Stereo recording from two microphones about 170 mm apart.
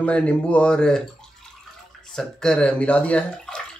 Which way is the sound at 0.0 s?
10° left (ahead or behind).